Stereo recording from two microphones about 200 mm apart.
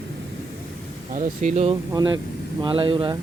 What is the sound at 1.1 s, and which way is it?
Speech, 35° right (ahead or behind).